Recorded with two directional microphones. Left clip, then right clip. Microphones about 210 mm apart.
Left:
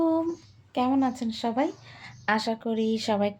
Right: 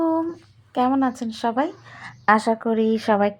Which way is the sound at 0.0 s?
20° right (ahead or behind).